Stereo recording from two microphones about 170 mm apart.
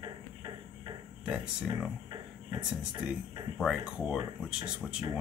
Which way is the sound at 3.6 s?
5° right (ahead or behind).